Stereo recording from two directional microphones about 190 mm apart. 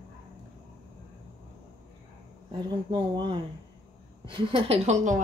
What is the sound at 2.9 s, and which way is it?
Speech, 25° right (ahead or behind).